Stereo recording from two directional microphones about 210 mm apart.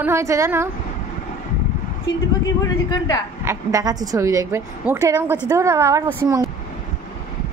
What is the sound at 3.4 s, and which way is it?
A woman's voice, 15° right (ahead or behind).